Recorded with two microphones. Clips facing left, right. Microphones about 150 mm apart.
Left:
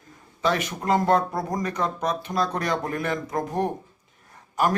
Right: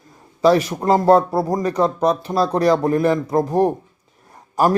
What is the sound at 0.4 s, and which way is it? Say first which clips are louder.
Speech: right 9 dB; 35° right (ahead or behind).